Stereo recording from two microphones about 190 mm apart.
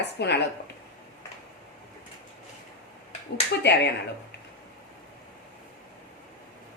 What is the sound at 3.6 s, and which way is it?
Speech, 65° left (ahead or behind).